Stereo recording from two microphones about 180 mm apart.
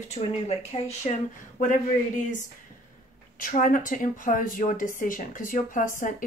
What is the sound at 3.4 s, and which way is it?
A woman's voice, 50° left (ahead or behind).